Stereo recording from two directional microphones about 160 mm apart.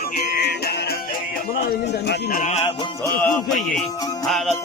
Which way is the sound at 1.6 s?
80° left.